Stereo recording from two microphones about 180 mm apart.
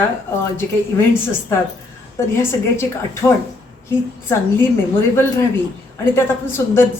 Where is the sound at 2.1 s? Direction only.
15° left (ahead or behind).